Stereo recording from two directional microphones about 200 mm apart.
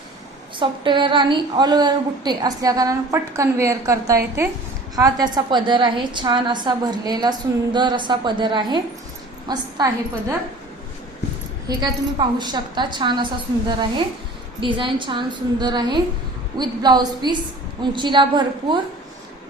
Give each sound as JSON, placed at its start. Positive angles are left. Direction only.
{"t": 0.6, "sound": "a woman's voice", "side_deg": -25}
{"t": 11.7, "sound": "a woman's voice", "side_deg": -20}